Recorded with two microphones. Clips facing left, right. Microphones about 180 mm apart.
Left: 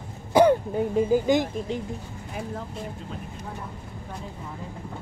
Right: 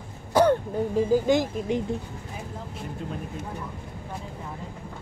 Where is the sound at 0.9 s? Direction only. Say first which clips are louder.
Even; centre (ahead or behind).